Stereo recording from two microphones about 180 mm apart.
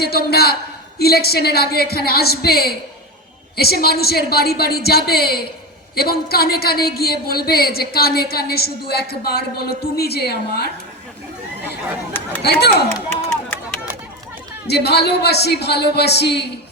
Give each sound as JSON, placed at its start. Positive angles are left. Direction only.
{"t": 0.0, "sound": "a woman's voice", "side_deg": 60}
{"t": 12.4, "sound": "a woman's voice", "side_deg": 65}
{"t": 14.7, "sound": "a woman's voice", "side_deg": 65}